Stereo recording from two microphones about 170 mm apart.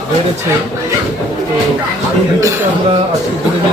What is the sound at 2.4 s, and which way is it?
Speech, 15° right (ahead or behind).